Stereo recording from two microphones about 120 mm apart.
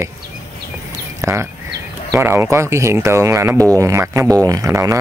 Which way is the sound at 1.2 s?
20° right (ahead or behind).